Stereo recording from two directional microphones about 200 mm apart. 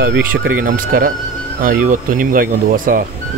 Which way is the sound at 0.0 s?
45° right (ahead or behind).